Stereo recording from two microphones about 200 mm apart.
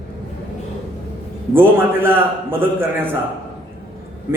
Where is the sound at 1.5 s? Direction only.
10° right (ahead or behind).